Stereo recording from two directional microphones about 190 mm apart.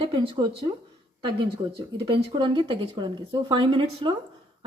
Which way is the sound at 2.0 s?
25° right (ahead or behind).